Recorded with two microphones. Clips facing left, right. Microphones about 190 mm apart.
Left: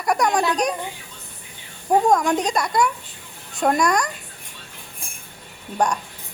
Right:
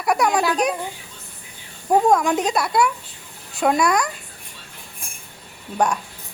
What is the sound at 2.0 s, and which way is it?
Speech, 5° right (ahead or behind).